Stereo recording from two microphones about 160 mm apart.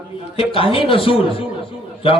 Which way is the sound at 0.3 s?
35° left (ahead or behind).